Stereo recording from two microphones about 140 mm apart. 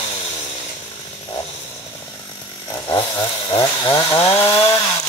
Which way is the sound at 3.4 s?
35° left (ahead or behind).